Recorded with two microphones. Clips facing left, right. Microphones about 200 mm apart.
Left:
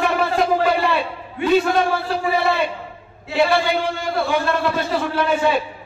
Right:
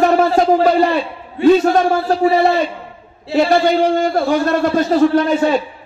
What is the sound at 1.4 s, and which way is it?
Speech, 30° right (ahead or behind).